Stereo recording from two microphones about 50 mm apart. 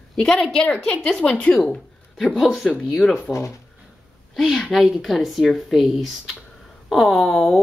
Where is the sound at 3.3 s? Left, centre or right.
Left.